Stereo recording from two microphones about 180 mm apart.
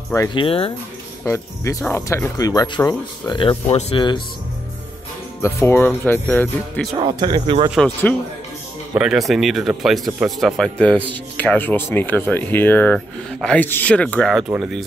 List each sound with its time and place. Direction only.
0.1 s speech: 20° left (ahead or behind)
1.2 s speech: 15° left (ahead or behind)
3.3 s speech: 30° left (ahead or behind)
5.4 s speech: 15° left (ahead or behind)
7.0 s speech: 25° right (ahead or behind)
7.7 s speech: 5° left (ahead or behind)